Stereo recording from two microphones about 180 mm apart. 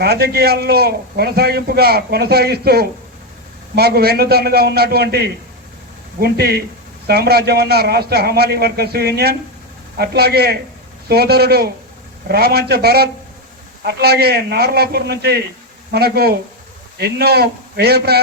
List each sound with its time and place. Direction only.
0.0 s a man's voice: 60° right (ahead or behind)